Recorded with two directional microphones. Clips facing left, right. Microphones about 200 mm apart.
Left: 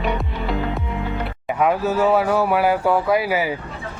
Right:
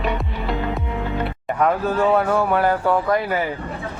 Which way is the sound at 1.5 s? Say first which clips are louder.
Left 1 dB; 5° left (ahead or behind).